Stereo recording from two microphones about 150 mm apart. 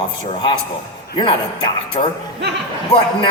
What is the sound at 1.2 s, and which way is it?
A man's voice, 35° left (ahead or behind).